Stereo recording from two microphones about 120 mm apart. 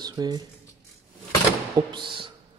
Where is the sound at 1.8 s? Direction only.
40° right (ahead or behind).